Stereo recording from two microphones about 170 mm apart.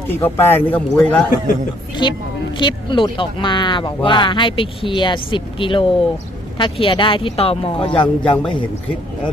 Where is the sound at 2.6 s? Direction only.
30° left (ahead or behind).